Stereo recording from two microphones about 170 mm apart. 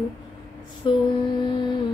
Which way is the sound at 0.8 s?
25° left (ahead or behind).